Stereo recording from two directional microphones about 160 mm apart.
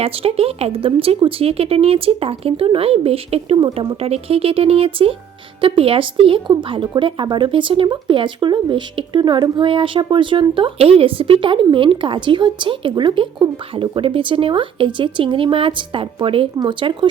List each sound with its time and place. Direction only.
0.0 s speech: 35° right (ahead or behind)